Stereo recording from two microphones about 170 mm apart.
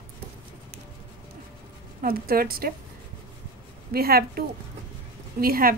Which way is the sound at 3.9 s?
65° right (ahead or behind).